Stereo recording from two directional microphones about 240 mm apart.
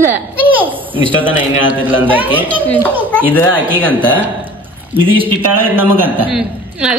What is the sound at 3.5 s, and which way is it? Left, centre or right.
Speech, centre.